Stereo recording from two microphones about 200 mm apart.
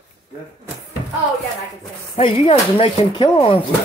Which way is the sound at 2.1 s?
30° left (ahead or behind).